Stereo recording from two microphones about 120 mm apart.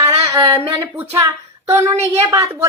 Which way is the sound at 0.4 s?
45° right (ahead or behind).